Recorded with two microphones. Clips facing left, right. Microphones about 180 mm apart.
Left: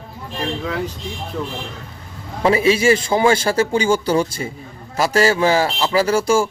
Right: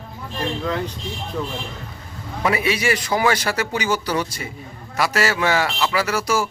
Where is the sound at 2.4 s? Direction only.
30° left (ahead or behind).